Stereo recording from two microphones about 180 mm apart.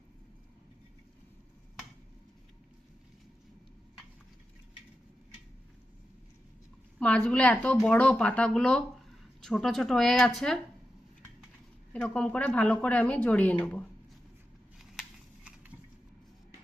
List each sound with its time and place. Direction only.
7.0 s a woman's voice: 5° left (ahead or behind)
11.9 s a woman's voice: 5° left (ahead or behind)